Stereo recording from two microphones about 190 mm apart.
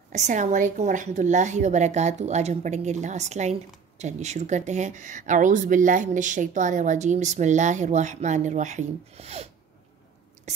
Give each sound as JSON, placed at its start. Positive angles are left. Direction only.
{"t": 0.1, "sound": "speech", "side_deg": -40}